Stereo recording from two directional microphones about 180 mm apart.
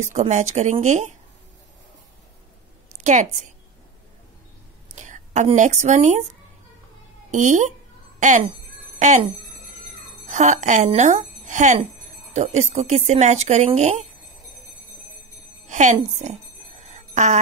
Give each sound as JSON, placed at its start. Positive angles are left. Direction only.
{"t": 0.1, "sound": "speech", "side_deg": -40}
{"t": 3.0, "sound": "a woman's voice", "side_deg": -40}
{"t": 4.9, "sound": "a woman's voice", "side_deg": -45}
{"t": 7.2, "sound": "a child's voice", "side_deg": -45}
{"t": 15.6, "sound": "music", "side_deg": -45}
{"t": 16.8, "sound": "a sound", "side_deg": -40}